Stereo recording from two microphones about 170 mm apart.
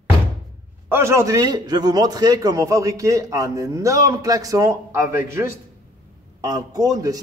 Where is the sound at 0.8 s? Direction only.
15° right (ahead or behind).